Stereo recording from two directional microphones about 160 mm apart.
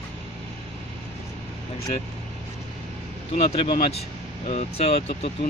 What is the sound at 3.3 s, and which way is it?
Speech, 45° left (ahead or behind).